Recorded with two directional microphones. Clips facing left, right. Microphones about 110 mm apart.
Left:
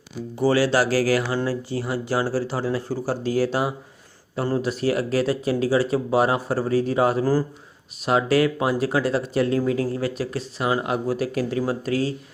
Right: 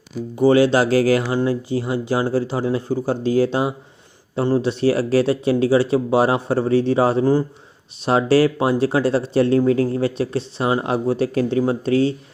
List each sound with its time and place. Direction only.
0.3 s speech: 20° right (ahead or behind)